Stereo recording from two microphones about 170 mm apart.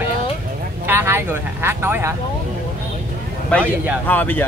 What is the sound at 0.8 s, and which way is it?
Speech, 15° right (ahead or behind).